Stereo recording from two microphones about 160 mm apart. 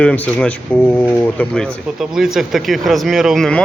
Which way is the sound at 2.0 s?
5° right (ahead or behind).